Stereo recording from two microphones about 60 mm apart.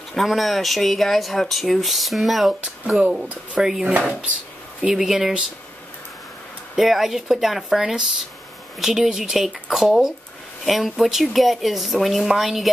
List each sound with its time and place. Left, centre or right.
0.1 s speech: centre
3.0 s speech: centre
3.8 s speech: right
4.9 s speech: centre
6.7 s speech: centre